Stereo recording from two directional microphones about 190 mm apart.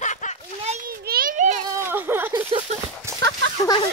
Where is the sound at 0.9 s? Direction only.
55° right (ahead or behind).